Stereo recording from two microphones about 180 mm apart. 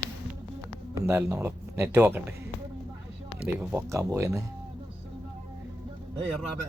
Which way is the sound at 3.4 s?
5° right (ahead or behind).